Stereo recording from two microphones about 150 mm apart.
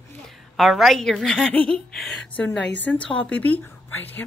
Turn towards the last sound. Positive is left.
turn(degrees=10)  # may be behind; listen again after turning